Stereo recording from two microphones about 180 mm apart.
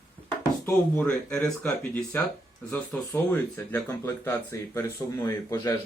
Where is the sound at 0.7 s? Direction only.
10° left (ahead or behind).